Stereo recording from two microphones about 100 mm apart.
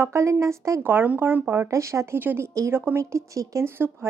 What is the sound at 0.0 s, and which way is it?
Speech, 30° right (ahead or behind).